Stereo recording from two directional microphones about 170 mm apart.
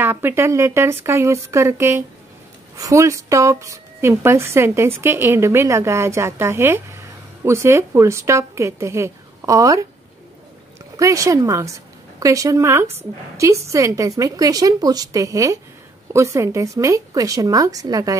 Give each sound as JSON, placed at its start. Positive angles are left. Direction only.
{"t": 0.0, "sound": "speech", "side_deg": -15}
{"t": 11.0, "sound": "a woman's voice", "side_deg": -20}